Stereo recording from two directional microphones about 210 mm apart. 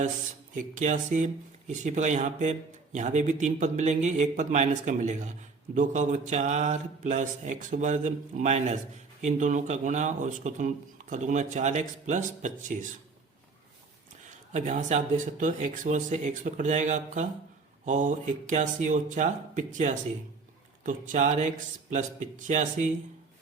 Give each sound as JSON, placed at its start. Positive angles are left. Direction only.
{"t": 0.5, "sound": "speech", "side_deg": -35}
{"t": 14.3, "sound": "speech", "side_deg": -35}